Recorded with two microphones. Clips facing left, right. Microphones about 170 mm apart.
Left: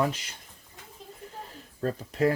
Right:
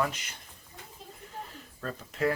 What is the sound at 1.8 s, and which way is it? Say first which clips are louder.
Speech: left 5 dB; 35° left (ahead or behind).